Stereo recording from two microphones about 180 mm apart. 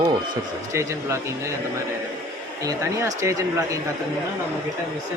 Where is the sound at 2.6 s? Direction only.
15° right (ahead or behind).